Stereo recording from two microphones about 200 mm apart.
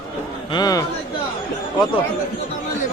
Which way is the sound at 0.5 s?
20° left (ahead or behind).